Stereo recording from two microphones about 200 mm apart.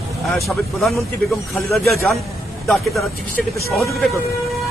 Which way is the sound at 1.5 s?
10° left (ahead or behind).